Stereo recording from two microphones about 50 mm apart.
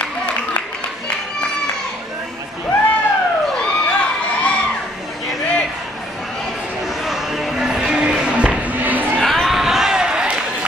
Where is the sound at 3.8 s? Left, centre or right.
Left.